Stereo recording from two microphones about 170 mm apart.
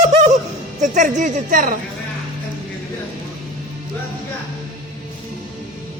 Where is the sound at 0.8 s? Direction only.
45° right (ahead or behind).